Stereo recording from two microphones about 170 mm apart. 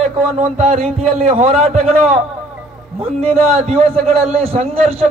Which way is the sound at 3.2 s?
40° right (ahead or behind).